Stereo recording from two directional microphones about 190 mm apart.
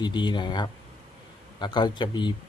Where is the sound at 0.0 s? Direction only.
25° left (ahead or behind).